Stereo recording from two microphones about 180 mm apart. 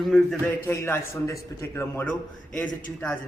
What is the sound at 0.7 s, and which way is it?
A man's voice, 15° left (ahead or behind).